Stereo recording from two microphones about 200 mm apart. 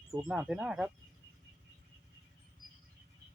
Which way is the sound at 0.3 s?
5° right (ahead or behind).